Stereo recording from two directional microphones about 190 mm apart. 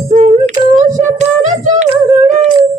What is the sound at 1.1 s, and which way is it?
Child singing, 40° right (ahead or behind).